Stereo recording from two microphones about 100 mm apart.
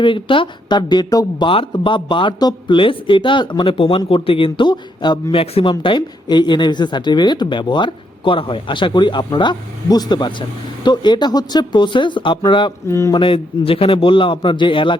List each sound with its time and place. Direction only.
0.0 s a woman's voice: 55° left (ahead or behind); by 1.5 s 40° left (ahead or behind)
1.5 s a man's voice: 60° left (ahead or behind)
3.6 s a man's voice: 65° left (ahead or behind); by 5.2 s 50° left (ahead or behind)
5.3 s a woman's voice: 70° left (ahead or behind)
12.9 s speech: 30° left (ahead or behind)
13.1 s a man's voice: 60° left (ahead or behind)